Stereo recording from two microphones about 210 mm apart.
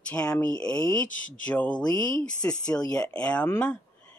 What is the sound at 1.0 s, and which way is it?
Speech, 40° left (ahead or behind).